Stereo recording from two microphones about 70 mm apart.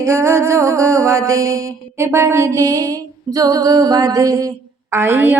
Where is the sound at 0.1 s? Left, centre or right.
Right.